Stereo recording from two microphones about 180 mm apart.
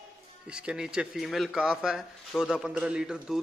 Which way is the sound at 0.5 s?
5° right (ahead or behind).